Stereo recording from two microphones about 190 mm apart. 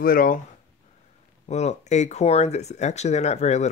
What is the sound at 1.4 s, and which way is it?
Speech, 35° left (ahead or behind).